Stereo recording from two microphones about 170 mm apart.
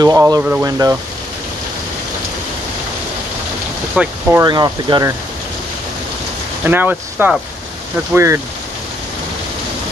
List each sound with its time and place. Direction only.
0.0 s speech: 20° right (ahead or behind)
0.4 s speech: 10° right (ahead or behind)
0.7 s speech: 20° right (ahead or behind)
3.9 s speech: 5° right (ahead or behind)
4.4 s speech: 25° right (ahead or behind)
6.6 s speech: 10° right (ahead or behind)